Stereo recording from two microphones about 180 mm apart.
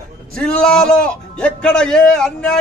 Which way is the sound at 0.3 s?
5° left (ahead or behind).